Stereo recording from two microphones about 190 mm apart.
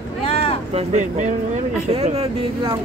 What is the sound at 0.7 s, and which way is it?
Speech, 35° right (ahead or behind).